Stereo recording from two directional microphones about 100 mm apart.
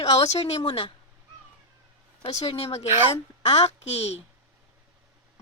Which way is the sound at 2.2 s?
80° left.